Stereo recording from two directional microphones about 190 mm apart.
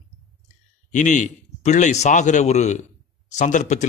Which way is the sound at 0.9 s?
40° left (ahead or behind).